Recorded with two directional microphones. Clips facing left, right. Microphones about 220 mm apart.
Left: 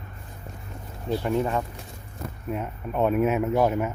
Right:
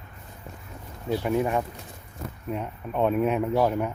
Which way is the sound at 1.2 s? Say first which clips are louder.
Right 1 dB; 10° right (ahead or behind).